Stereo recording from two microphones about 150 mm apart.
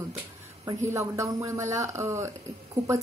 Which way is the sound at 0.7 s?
20° right (ahead or behind).